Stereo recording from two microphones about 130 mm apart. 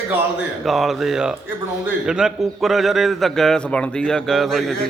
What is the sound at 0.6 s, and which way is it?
A man's voice, centre (ahead or behind).